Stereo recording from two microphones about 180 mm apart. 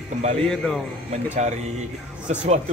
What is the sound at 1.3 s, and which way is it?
Speech, 40° right (ahead or behind).